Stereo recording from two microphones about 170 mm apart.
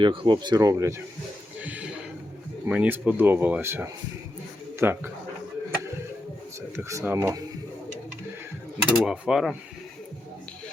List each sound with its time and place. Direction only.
0.0 s speech: 30° right (ahead or behind)
1.6 s a sound: 10° right (ahead or behind)
2.6 s speech: 10° right (ahead or behind)
6.7 s speech: 15° right (ahead or behind)
9.0 s speech: 5° right (ahead or behind)